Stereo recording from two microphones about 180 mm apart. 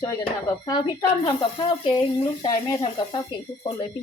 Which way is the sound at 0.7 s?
20° left (ahead or behind).